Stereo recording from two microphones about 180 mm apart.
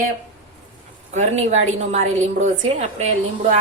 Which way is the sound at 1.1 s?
40° right (ahead or behind).